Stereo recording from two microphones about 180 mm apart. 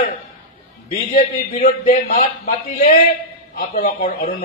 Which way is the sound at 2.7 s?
50° left (ahead or behind).